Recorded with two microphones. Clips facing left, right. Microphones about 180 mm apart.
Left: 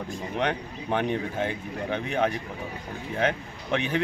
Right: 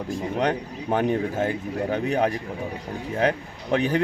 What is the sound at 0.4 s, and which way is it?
Speech, 40° right (ahead or behind).